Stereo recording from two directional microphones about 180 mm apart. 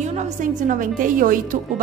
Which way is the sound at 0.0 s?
40° right (ahead or behind).